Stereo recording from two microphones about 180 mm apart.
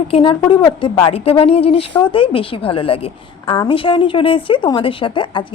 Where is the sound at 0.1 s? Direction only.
30° left (ahead or behind).